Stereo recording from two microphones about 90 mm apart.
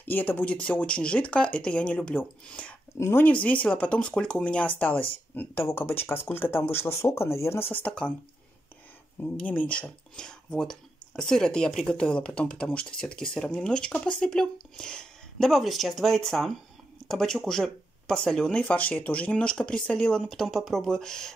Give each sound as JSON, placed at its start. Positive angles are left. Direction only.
{"t": 0.0, "sound": "speech", "side_deg": 20}
{"t": 3.0, "sound": "speech", "side_deg": 30}
{"t": 3.3, "sound": "speech", "side_deg": 15}
{"t": 9.4, "sound": "speech", "side_deg": 15}